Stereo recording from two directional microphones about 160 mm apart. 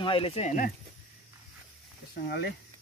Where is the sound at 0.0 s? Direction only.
35° left (ahead or behind).